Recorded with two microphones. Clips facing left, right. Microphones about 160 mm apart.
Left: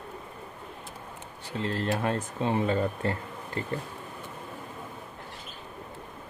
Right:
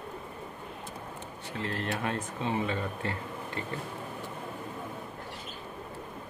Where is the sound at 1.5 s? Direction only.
30° left (ahead or behind).